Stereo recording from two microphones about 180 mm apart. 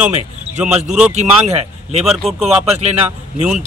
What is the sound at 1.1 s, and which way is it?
Speech, 40° right (ahead or behind).